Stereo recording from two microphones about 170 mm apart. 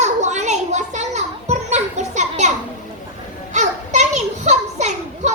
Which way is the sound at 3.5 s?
40° right (ahead or behind).